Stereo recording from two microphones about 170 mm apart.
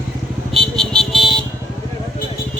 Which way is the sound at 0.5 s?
5° left (ahead or behind).